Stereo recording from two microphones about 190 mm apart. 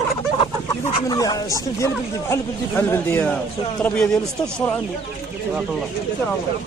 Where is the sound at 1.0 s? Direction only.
20° left (ahead or behind); by 6.3 s centre (ahead or behind).